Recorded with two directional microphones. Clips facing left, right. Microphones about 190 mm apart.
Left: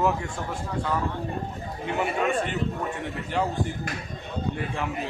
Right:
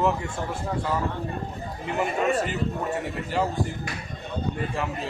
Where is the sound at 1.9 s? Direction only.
5° right (ahead or behind).